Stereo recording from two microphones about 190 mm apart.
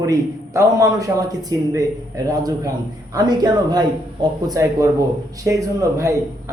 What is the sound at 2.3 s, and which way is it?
Speech, 20° right (ahead or behind).